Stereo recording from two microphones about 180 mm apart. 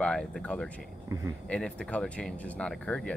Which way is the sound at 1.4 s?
5° left (ahead or behind).